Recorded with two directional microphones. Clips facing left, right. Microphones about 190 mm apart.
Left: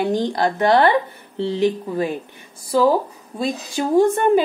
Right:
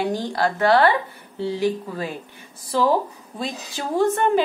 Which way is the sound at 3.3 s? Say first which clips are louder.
Left 7 dB; 15° left (ahead or behind).